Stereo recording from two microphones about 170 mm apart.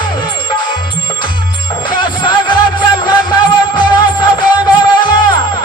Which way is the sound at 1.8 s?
25° left (ahead or behind).